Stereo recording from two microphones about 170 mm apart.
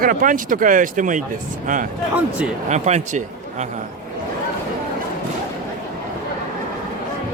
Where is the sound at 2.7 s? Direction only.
40° right (ahead or behind).